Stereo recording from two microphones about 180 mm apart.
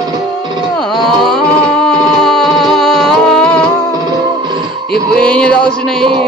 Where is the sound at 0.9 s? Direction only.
Centre (ahead or behind).